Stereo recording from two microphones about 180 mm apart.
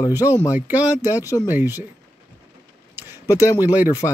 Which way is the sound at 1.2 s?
20° left (ahead or behind).